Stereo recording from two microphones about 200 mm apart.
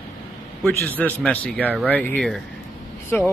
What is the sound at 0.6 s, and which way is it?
A man's voice, 10° left (ahead or behind).